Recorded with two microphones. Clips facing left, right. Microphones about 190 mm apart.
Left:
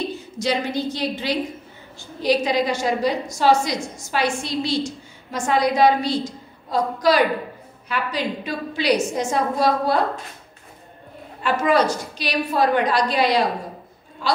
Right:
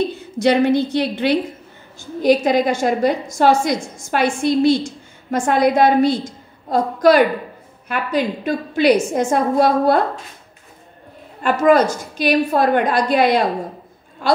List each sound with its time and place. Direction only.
0.4 s a woman's voice: 60° right (ahead or behind)
11.4 s a woman's voice: 50° right (ahead or behind)